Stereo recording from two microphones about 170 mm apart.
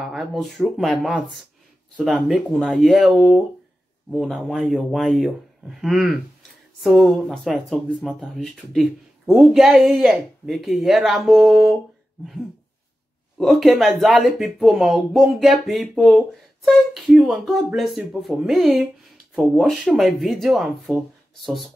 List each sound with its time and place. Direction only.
0.0 s speech: centre (ahead or behind)
13.4 s speech: centre (ahead or behind)